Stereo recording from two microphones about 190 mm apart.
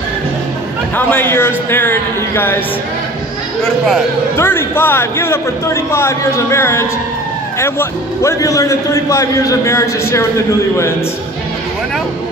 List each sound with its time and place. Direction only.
0.9 s a man's voice: 10° left (ahead or behind)
3.6 s speech: centre (ahead or behind)
4.4 s a man's voice: 10° left (ahead or behind)
8.2 s a man's voice: 15° left (ahead or behind)